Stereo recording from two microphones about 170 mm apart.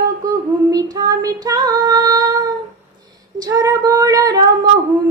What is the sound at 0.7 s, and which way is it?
Female singing, 20° right (ahead or behind).